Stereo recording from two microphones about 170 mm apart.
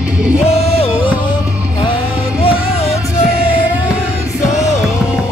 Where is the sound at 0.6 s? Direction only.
35° left (ahead or behind).